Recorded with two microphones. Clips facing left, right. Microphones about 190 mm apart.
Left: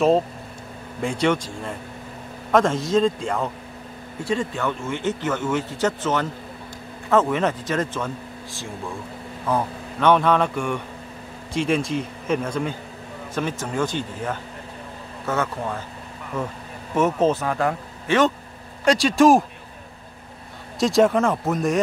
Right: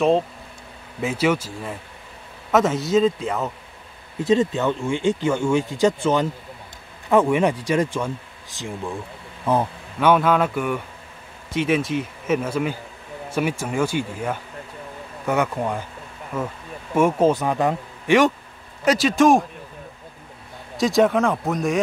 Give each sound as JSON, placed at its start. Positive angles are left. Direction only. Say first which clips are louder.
{"t": 1.0, "sound": "speech", "louder": "right 1 dB", "side_deg": -5}
{"t": 4.2, "sound": "a man's voice", "louder": "right 6 dB", "side_deg": -20}
{"t": 9.9, "sound": "speech", "louder": "even", "side_deg": -5}
{"t": 18.9, "sound": "speech", "louder": "left 1 dB", "side_deg": 0}
{"t": 20.7, "sound": "speech", "louder": "even", "side_deg": 0}